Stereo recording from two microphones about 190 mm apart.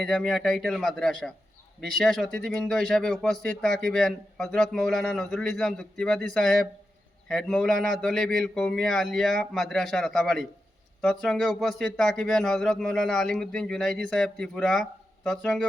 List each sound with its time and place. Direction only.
0.0 s speech: 5° left (ahead or behind)